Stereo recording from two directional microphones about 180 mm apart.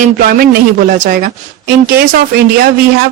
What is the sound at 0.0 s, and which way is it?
A man's voice, 55° right (ahead or behind).